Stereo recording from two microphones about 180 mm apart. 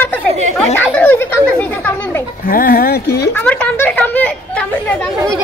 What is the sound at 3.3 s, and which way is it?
Speech, 10° left (ahead or behind).